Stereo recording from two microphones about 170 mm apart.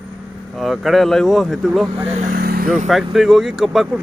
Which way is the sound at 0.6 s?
Centre (ahead or behind).